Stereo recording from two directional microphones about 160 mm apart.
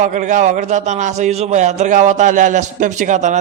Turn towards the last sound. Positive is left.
turn(degrees=-50)  # may be behind; listen again after turning